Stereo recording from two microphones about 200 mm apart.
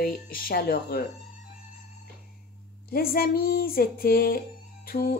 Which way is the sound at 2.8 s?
50° left (ahead or behind).